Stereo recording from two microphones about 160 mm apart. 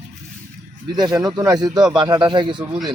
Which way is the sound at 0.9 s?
25° right (ahead or behind).